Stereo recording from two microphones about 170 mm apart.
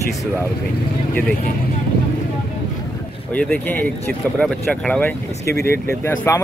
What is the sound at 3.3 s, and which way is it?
Speech, 5° left (ahead or behind).